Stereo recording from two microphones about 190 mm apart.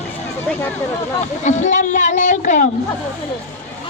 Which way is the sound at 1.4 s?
40° left (ahead or behind).